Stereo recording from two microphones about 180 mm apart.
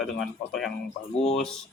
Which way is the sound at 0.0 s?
Centre (ahead or behind).